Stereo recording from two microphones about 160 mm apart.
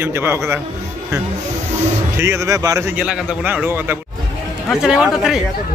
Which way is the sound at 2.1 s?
15° right (ahead or behind).